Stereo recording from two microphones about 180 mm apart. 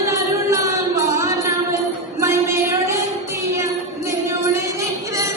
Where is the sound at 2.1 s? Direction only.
15° right (ahead or behind).